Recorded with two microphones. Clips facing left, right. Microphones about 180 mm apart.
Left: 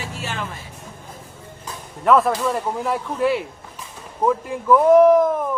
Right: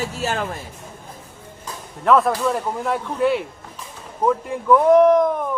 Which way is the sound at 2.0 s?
Centre (ahead or behind).